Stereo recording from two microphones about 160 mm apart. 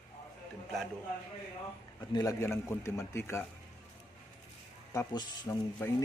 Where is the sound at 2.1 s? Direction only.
20° left (ahead or behind).